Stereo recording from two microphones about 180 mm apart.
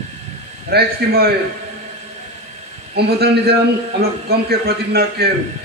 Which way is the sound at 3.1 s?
60° right (ahead or behind).